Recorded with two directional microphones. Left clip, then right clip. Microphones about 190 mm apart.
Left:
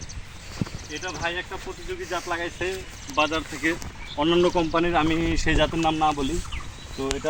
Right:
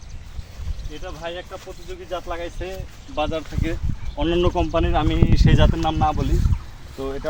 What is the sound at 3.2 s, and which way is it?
Speech, 65° right (ahead or behind).